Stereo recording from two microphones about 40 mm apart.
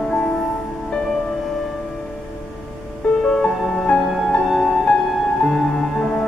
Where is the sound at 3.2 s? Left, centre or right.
Centre.